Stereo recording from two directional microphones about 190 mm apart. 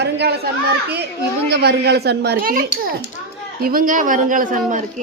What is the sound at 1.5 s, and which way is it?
Speech, 60° right (ahead or behind).